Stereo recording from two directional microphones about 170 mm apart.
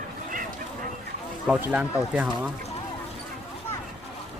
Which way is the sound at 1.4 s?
5° right (ahead or behind).